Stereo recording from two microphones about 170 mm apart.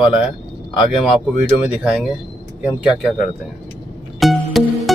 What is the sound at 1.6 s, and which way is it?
Speech, 5° right (ahead or behind).